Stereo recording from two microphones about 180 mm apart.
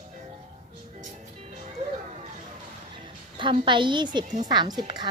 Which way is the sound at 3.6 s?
25° right (ahead or behind).